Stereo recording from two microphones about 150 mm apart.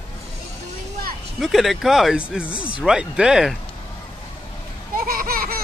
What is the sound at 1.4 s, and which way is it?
Speech, centre (ahead or behind).